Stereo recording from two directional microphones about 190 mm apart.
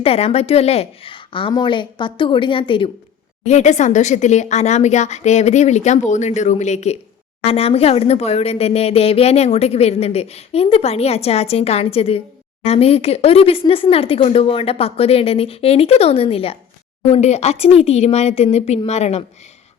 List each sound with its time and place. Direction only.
0.0 s a woman's voice: 30° left (ahead or behind)
3.4 s speech: 35° left (ahead or behind)